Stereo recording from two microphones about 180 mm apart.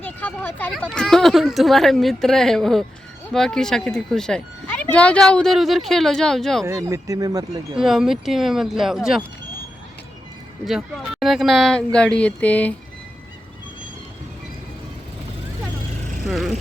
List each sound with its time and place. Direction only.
0.0 s speech: 10° left (ahead or behind)
6.7 s speech: 15° right (ahead or behind)
7.8 s speech: 5° right (ahead or behind)
10.7 s speech: centre (ahead or behind)
16.2 s vehicle: centre (ahead or behind)